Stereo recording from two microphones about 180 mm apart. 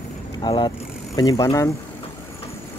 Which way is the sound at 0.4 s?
25° left (ahead or behind).